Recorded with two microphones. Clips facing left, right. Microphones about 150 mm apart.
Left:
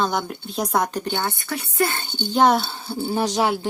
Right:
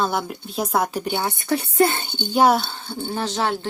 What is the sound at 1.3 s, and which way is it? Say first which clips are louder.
Speech: right 5 dB; 30° right (ahead or behind).